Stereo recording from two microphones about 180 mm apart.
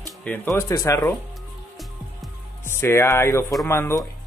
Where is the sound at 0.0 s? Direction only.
10° left (ahead or behind).